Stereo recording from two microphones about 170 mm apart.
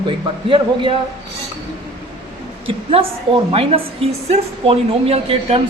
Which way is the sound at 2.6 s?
35° right (ahead or behind).